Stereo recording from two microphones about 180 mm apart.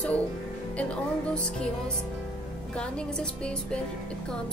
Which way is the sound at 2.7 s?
5° left (ahead or behind).